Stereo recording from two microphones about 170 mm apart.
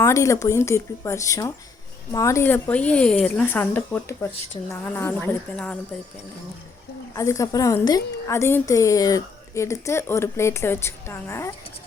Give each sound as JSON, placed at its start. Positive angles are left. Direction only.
{"t": 0.0, "sound": "a woman's voice", "side_deg": 15}
{"t": 7.1, "sound": "a woman's voice", "side_deg": 20}